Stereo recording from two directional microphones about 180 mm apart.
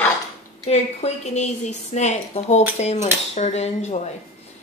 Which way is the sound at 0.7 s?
35° left (ahead or behind).